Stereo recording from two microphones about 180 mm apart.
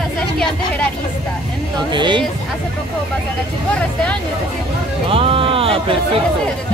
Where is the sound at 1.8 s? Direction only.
25° right (ahead or behind).